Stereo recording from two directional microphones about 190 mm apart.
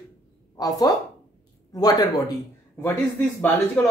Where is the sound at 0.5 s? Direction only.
20° left (ahead or behind).